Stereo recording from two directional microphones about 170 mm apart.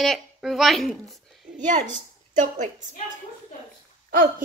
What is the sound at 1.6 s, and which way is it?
A woman's voice, 45° right (ahead or behind).